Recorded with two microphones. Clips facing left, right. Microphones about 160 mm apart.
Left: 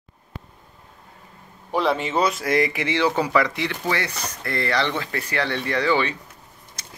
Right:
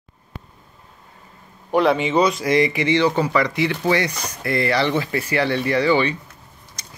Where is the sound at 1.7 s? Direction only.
Centre (ahead or behind).